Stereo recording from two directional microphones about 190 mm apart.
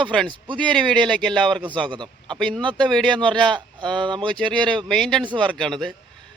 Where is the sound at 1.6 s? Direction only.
25° right (ahead or behind).